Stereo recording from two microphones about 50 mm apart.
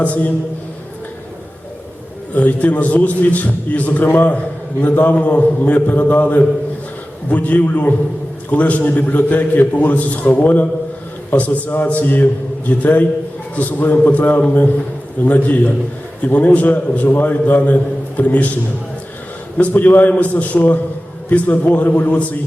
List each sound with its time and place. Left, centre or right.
0.0 s a man's voice: left
2.3 s a man's voice: left
19.5 s a man's voice: left